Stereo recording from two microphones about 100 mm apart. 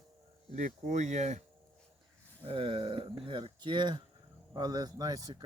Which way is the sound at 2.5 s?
65° right (ahead or behind).